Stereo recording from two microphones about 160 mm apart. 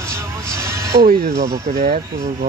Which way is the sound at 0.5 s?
15° right (ahead or behind).